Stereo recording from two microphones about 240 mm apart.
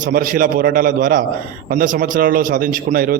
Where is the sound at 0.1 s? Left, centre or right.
Right.